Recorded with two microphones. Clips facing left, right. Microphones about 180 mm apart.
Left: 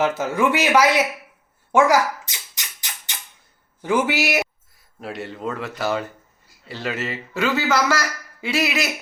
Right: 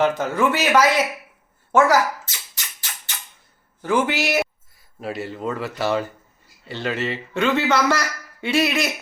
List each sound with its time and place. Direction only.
0.2 s speech: 10° left (ahead or behind)
1.7 s a sound: 15° left (ahead or behind)
3.8 s a man's voice: 10° left (ahead or behind)